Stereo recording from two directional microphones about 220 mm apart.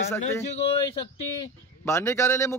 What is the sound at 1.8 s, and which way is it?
Speech, 10° left (ahead or behind).